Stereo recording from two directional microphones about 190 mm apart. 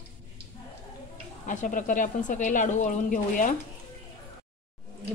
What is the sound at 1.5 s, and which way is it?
Speech, 40° left (ahead or behind).